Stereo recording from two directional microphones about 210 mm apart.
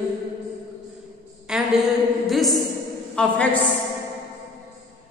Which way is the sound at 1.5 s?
5° right (ahead or behind).